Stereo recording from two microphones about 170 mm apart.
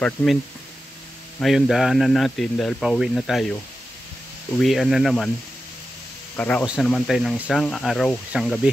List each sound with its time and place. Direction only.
0.0 s speech: 5° left (ahead or behind)
1.4 s speech: centre (ahead or behind)
4.6 s speech: centre (ahead or behind)
6.3 s speech: 10° left (ahead or behind)
6.6 s speech: 5° right (ahead or behind)